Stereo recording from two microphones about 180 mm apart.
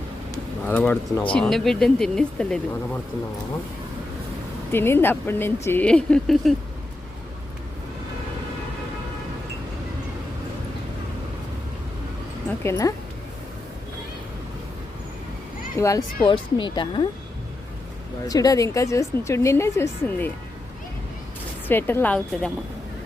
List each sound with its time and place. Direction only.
0.7 s a woman's voice: 10° left (ahead or behind)
4.7 s a woman's voice: 10° left (ahead or behind)
12.6 s a woman's voice: 20° left (ahead or behind)
15.8 s a woman's voice: 20° left (ahead or behind)
18.3 s a woman's voice: 20° left (ahead or behind)
21.7 s a woman's voice: 10° left (ahead or behind)